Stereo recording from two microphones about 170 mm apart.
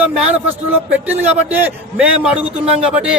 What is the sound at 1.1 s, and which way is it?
Speech, 40° right (ahead or behind).